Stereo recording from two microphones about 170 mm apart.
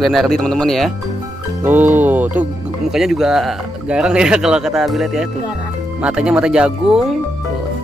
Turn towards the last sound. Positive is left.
turn(degrees=-5)  # may be behind; listen again after turning